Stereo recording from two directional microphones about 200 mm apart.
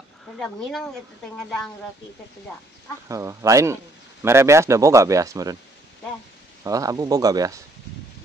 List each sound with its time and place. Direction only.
0.4 s speech: centre (ahead or behind)
3.1 s a man's voice: 15° right (ahead or behind)
6.6 s a man's voice: 15° right (ahead or behind)